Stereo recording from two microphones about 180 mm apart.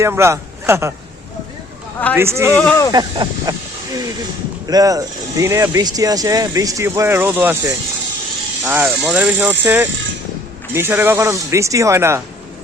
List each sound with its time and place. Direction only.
0.0 s a man's voice: 15° right (ahead or behind)
2.1 s speech: 15° right (ahead or behind)
2.6 s speech: 10° left (ahead or behind)
2.9 s speech: 25° right (ahead or behind)
4.7 s speech: 20° right (ahead or behind)